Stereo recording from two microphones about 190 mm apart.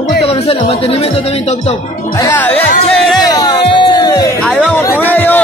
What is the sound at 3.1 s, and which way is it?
Music, 20° left (ahead or behind).